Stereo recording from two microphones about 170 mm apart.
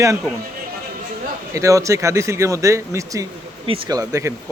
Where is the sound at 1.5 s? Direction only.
20° right (ahead or behind).